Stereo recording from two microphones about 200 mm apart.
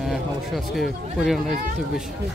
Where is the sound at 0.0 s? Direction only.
Centre (ahead or behind).